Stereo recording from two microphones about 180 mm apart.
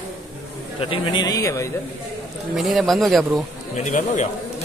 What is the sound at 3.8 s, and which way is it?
Speech, 40° left (ahead or behind).